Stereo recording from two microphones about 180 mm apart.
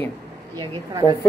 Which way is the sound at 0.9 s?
20° right (ahead or behind).